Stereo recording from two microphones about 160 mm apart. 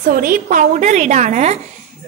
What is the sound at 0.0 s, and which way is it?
A woman's voice, 60° right (ahead or behind).